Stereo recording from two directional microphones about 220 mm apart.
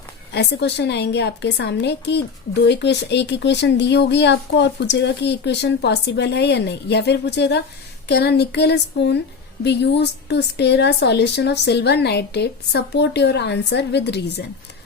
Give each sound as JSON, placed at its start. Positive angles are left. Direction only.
{"t": 0.3, "sound": "a woman's voice", "side_deg": 50}